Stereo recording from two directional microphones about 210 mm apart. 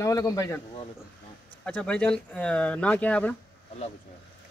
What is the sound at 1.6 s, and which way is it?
Speech, 5° left (ahead or behind).